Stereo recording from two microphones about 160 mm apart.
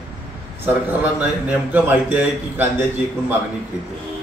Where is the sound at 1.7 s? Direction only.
10° right (ahead or behind).